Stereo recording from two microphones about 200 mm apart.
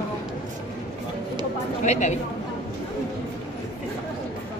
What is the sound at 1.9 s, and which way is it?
Speech, 35° left (ahead or behind).